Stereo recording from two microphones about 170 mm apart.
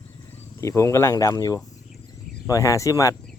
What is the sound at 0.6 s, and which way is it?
Speech, 15° left (ahead or behind).